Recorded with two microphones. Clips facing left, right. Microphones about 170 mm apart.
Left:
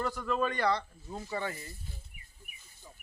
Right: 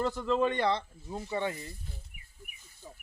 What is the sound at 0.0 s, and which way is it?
Speech, 25° right (ahead or behind).